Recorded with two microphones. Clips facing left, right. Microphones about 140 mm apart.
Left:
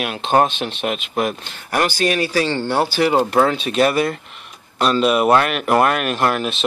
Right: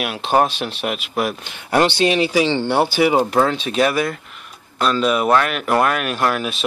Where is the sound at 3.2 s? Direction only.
5° left (ahead or behind).